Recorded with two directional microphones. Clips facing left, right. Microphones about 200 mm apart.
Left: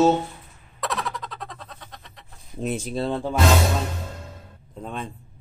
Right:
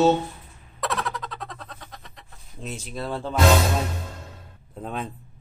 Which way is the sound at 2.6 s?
50° left (ahead or behind).